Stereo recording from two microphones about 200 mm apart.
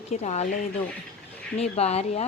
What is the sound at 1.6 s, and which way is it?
Speech, 30° left (ahead or behind).